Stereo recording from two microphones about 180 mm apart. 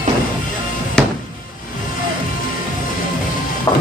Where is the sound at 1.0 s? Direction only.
5° left (ahead or behind).